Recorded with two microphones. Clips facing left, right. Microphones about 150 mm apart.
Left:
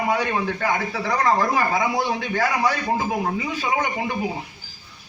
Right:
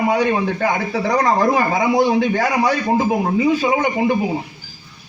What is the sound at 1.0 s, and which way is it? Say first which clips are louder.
Speech: right 6 dB; 40° right (ahead or behind).